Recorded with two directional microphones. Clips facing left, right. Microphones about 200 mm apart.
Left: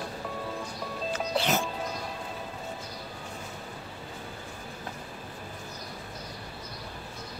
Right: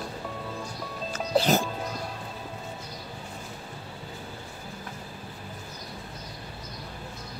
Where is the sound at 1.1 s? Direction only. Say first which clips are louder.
Right 5 dB; 40° right (ahead or behind).